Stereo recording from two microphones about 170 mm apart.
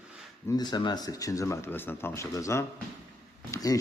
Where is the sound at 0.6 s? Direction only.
25° left (ahead or behind).